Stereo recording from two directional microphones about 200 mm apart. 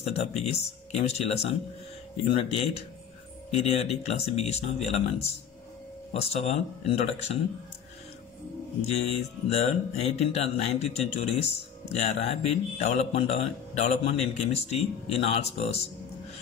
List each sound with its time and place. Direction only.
0.0 s speech: 30° left (ahead or behind)
8.8 s speech: 30° left (ahead or behind)